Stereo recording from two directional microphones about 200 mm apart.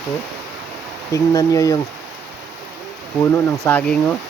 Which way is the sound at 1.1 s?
15° left (ahead or behind).